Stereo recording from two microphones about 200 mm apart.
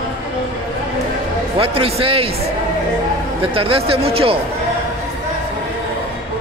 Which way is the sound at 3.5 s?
30° right (ahead or behind).